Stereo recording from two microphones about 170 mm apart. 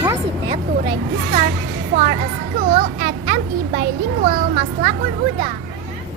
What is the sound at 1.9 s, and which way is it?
Speech, 45° right (ahead or behind).